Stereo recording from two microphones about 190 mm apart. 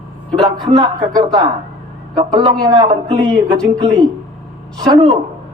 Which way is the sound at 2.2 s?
20° right (ahead or behind).